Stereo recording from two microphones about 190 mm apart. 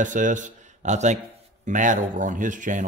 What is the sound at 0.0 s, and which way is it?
Speech, 40° right (ahead or behind).